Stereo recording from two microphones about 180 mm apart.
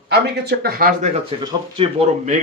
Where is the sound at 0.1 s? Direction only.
60° right (ahead or behind).